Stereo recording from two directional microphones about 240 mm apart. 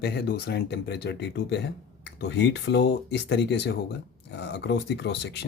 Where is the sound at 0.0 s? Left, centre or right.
Left.